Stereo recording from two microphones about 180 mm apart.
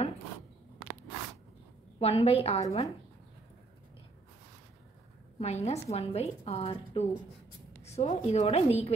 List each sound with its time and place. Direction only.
2.0 s a woman's voice: 35° left (ahead or behind)
5.4 s a woman's voice: 35° left (ahead or behind)